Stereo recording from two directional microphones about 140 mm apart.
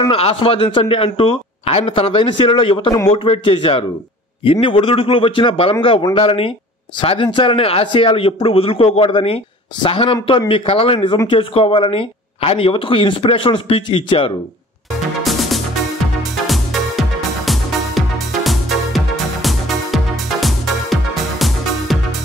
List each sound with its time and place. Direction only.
0.1 s speech: 40° left (ahead or behind)
15.2 s music: centre (ahead or behind)